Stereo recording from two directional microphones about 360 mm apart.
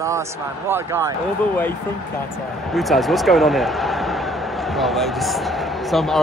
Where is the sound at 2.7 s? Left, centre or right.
Centre.